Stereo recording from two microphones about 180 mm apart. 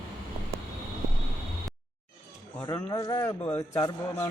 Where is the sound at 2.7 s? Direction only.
20° left (ahead or behind).